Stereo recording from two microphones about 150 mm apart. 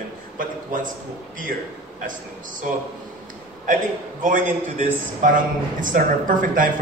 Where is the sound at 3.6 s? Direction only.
60° right (ahead or behind).